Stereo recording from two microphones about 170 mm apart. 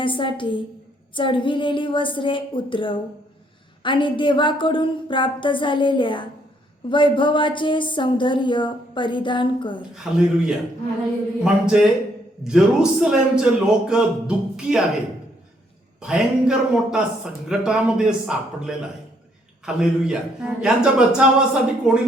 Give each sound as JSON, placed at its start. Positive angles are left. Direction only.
{"t": 0.0, "sound": "a woman's voice", "side_deg": 30}
{"t": 9.9, "sound": "a man's voice", "side_deg": -5}
{"t": 16.0, "sound": "a man's voice", "side_deg": -5}
{"t": 19.6, "sound": "a man's voice", "side_deg": -5}